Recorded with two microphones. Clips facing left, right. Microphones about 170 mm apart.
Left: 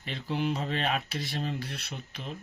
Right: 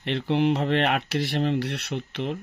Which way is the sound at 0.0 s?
70° right (ahead or behind).